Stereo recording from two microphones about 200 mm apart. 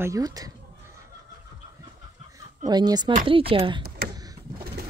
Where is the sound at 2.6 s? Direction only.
20° right (ahead or behind).